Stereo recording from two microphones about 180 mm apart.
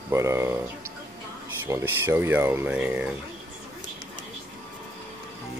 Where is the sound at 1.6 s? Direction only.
15° right (ahead or behind).